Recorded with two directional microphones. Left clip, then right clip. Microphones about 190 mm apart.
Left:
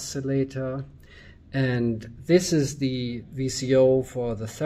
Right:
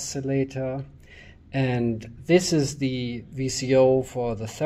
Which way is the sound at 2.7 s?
35° left (ahead or behind).